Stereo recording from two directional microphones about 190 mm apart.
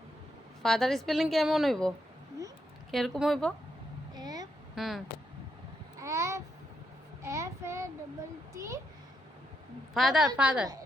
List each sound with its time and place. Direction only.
0.6 s a woman's voice: centre (ahead or behind)
2.9 s a woman's voice: centre (ahead or behind)
4.1 s vehicle: 20° right (ahead or behind)
4.7 s speech: centre (ahead or behind)
6.0 s babbling: 15° right (ahead or behind)
7.2 s child singing: 15° right (ahead or behind)
8.5 s a child's voice: 15° right (ahead or behind)
9.9 s a woman's voice: centre (ahead or behind)